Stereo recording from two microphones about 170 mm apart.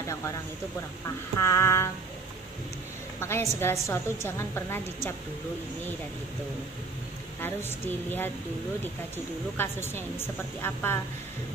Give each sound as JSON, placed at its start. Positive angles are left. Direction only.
{"t": 1.0, "sound": "a woman's voice", "side_deg": 15}
{"t": 3.2, "sound": "a woman's voice", "side_deg": 15}
{"t": 7.4, "sound": "a woman's voice", "side_deg": 10}
{"t": 9.6, "sound": "a woman's voice", "side_deg": 15}